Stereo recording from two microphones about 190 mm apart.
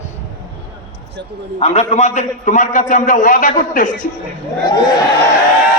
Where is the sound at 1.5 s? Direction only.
35° left (ahead or behind).